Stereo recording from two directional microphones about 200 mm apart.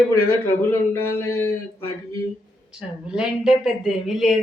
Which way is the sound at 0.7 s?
15° left (ahead or behind).